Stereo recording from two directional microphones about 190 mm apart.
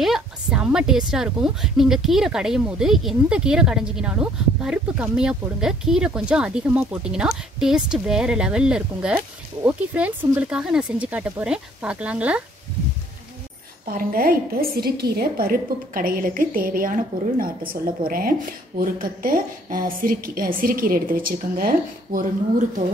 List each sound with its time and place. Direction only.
0.0 s a woman's voice: 5° right (ahead or behind)
13.8 s a woman's voice: 50° right (ahead or behind)